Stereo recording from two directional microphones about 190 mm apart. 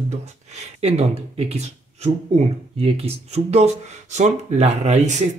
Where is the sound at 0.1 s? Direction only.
35° right (ahead or behind).